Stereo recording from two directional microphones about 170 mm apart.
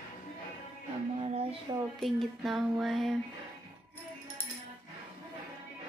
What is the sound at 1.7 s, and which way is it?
Speech, 25° right (ahead or behind).